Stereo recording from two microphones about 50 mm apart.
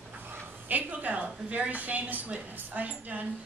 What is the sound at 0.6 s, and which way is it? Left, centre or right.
A woman's voice, right.